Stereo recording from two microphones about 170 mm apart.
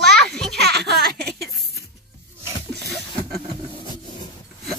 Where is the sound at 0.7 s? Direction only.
75° right (ahead or behind).